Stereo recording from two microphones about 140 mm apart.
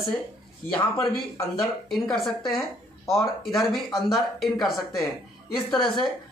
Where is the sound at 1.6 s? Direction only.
Centre (ahead or behind).